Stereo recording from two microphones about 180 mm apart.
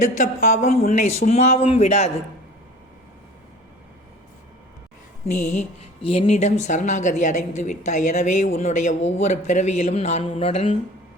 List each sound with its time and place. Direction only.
0.0 s speech: 40° left (ahead or behind)
5.2 s speech: 40° left (ahead or behind)